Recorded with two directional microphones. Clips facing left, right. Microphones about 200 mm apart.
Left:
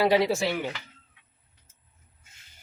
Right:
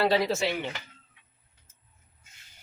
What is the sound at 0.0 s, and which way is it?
Speech, 15° left (ahead or behind).